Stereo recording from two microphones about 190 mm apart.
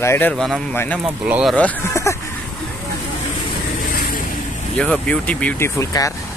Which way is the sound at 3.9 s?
50° left (ahead or behind).